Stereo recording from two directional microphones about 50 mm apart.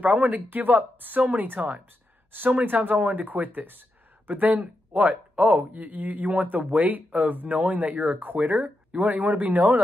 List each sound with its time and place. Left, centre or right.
0.0 s speech: right